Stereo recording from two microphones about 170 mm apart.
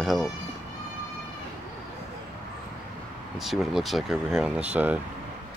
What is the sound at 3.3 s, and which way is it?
Speech, centre (ahead or behind).